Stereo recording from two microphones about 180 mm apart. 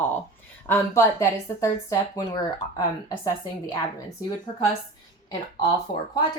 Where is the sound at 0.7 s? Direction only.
15° left (ahead or behind).